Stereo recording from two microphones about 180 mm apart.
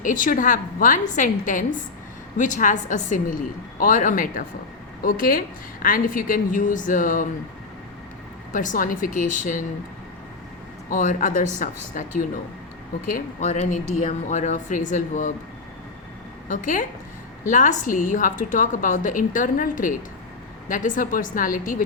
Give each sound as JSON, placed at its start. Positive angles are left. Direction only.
{"t": 0.0, "sound": "a woman's voice", "side_deg": 45}
{"t": 8.5, "sound": "a woman's voice", "side_deg": 45}
{"t": 10.8, "sound": "a woman's voice", "side_deg": 45}
{"t": 16.5, "sound": "a woman's voice", "side_deg": 45}